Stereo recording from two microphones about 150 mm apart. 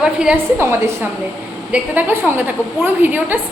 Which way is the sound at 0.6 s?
20° right (ahead or behind).